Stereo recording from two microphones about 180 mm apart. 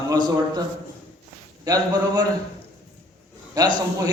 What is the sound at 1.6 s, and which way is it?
Speech, 20° right (ahead or behind).